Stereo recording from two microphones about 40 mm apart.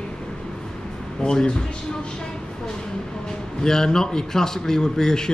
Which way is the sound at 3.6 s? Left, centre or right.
Centre.